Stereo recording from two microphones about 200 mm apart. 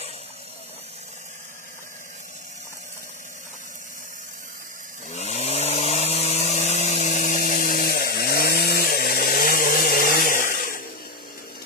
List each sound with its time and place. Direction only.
5.1 s vehicle: 35° left (ahead or behind)